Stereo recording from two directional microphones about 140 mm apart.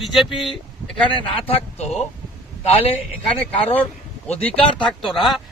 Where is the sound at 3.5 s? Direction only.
45° left (ahead or behind).